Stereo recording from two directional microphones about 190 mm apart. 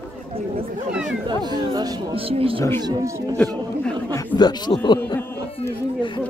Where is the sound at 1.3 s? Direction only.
25° right (ahead or behind).